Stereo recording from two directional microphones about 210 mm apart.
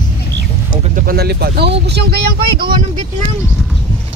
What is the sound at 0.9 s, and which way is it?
Speech, 45° right (ahead or behind).